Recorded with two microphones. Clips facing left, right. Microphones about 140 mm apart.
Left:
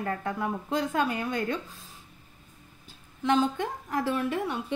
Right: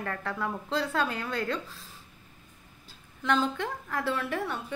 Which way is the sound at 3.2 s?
20° left (ahead or behind).